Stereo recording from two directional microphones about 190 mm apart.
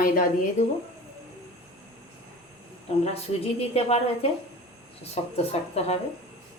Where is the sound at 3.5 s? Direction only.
35° left (ahead or behind).